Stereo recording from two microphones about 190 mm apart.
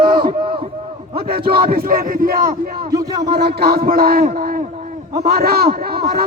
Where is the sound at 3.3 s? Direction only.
55° right (ahead or behind).